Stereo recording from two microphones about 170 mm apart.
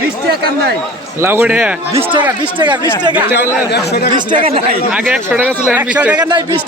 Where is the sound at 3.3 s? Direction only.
70° left (ahead or behind).